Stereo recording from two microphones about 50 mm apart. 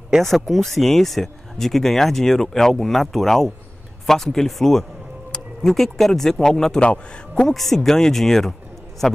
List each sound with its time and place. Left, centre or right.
0.1 s speech: centre
6.8 s a man's voice: left
7.4 s speech: centre